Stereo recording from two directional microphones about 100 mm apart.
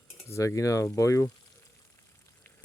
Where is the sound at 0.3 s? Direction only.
30° left (ahead or behind).